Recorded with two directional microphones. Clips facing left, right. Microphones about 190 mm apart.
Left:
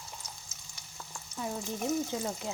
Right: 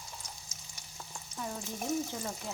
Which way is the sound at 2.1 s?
15° left (ahead or behind).